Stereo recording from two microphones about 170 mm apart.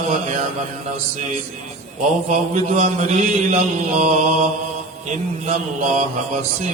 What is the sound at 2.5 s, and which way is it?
Mantra, 45° right (ahead or behind).